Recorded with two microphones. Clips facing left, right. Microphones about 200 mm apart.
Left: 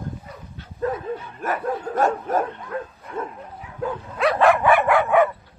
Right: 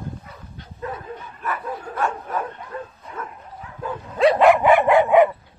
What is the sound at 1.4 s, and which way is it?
Bow-wow, 45° left (ahead or behind).